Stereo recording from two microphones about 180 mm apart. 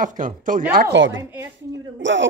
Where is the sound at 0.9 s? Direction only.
90° right.